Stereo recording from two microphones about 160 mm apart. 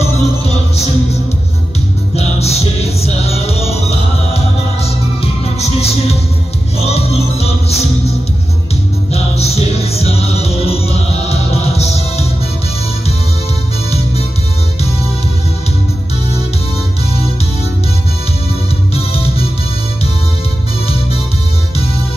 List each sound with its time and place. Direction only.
0.0 s music: 40° left (ahead or behind)
9.1 s music: 40° left (ahead or behind)
13.8 s music: 40° left (ahead or behind)
18.9 s music: 40° left (ahead or behind)